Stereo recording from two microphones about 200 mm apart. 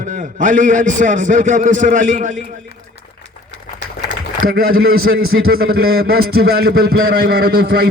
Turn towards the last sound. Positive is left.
turn(degrees=-50)  # may be behind; listen again after turning